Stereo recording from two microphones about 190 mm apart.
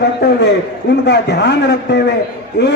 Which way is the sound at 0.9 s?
65° left (ahead or behind).